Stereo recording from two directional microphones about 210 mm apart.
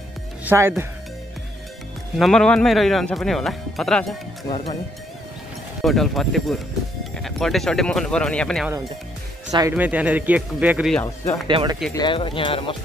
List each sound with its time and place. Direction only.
0.5 s speech: 10° right (ahead or behind)
2.1 s speech: centre (ahead or behind)
4.5 s speech: 30° left (ahead or behind)
5.8 s speech: centre (ahead or behind)
9.5 s speech: 20° right (ahead or behind)
9.8 s speech: 5° right (ahead or behind)
11.4 s speech: 20° right (ahead or behind)
11.9 s speech: 20° left (ahead or behind)